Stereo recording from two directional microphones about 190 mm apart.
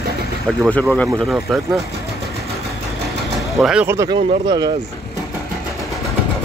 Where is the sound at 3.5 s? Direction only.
Centre (ahead or behind); by 4.7 s 20° right (ahead or behind).